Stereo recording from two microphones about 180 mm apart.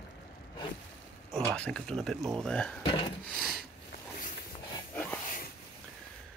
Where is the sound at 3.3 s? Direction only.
Centre (ahead or behind).